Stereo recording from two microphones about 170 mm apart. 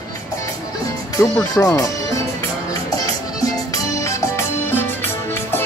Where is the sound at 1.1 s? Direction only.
20° left (ahead or behind).